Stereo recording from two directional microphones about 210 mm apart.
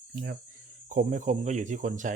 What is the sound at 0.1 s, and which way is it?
Speech, 40° right (ahead or behind).